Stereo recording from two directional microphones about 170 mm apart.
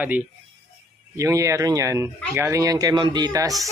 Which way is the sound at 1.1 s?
15° right (ahead or behind).